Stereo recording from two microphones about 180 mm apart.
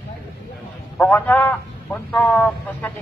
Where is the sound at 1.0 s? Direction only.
5° left (ahead or behind).